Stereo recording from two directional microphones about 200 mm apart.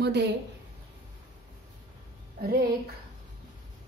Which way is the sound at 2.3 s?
50° right (ahead or behind).